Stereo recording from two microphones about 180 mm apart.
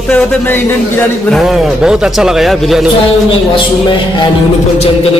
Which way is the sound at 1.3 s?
Centre (ahead or behind).